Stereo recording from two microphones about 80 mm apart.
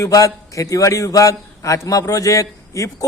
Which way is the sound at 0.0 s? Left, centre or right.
Left.